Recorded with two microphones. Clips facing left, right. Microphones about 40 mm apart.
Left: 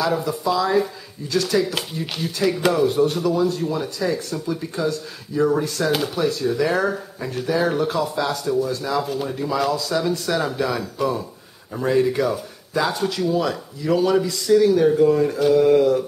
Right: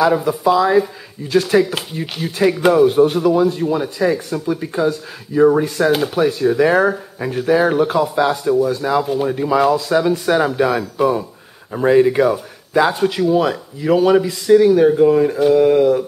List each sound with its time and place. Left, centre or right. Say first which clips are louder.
0.0 s speech: right 7 dB; right